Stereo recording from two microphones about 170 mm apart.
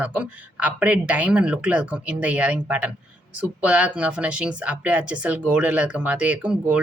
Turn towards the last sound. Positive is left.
turn(degrees=-5)  # may be behind; listen again after turning